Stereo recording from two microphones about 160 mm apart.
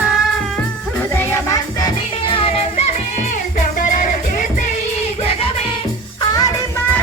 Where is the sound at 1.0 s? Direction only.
15° left (ahead or behind); by 2.9 s 40° left (ahead or behind).